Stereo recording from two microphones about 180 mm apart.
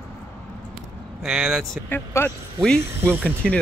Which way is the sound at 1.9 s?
10° left (ahead or behind).